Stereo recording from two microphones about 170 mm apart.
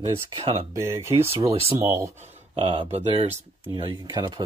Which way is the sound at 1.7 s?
40° right (ahead or behind).